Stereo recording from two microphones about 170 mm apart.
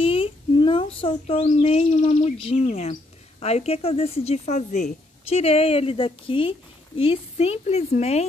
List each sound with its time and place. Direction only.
0.0 s speech: 30° left (ahead or behind)